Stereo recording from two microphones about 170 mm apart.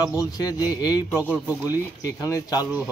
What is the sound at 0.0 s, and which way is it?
A man's voice, 20° left (ahead or behind).